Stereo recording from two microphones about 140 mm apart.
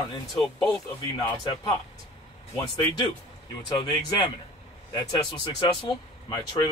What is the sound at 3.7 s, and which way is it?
Speech, 30° left (ahead or behind).